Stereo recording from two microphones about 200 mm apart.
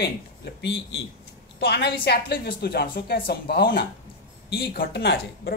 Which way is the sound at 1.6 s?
55° left (ahead or behind).